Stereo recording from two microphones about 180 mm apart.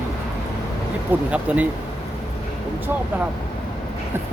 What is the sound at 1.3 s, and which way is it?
Speech, 10° right (ahead or behind).